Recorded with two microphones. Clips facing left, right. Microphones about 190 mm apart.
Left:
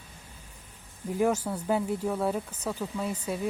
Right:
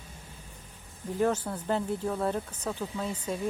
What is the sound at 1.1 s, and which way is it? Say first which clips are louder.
A woman's voice: left 1 dB; 10° left (ahead or behind).